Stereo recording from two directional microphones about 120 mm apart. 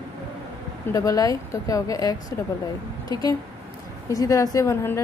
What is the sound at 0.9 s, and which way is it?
A woman's voice, 30° left (ahead or behind).